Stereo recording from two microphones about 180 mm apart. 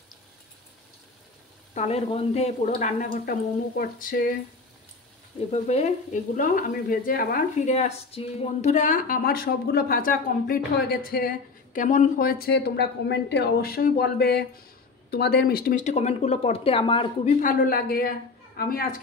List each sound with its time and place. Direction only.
1.7 s speech: 40° left (ahead or behind)
3.7 s speech: 55° left (ahead or behind)
5.5 s speech: 40° left (ahead or behind)
7.6 s a woman's voice: 40° left (ahead or behind); by 15.8 s 55° left (ahead or behind)
15.8 s speech: 40° left (ahead or behind)
17.4 s speech: 50° left (ahead or behind)